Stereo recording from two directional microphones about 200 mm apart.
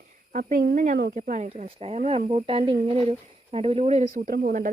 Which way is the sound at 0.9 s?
60° right (ahead or behind).